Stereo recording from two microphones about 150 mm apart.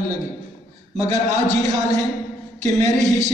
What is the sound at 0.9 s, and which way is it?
Speech, 50° right (ahead or behind).